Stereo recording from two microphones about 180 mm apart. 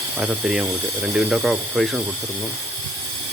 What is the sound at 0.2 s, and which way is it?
Speech, 5° right (ahead or behind).